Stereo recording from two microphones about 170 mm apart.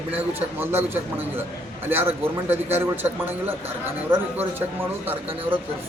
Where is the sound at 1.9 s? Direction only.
10° right (ahead or behind).